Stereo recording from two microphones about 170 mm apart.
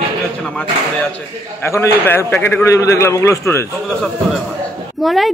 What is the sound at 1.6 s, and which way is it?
A man's voice, 15° left (ahead or behind).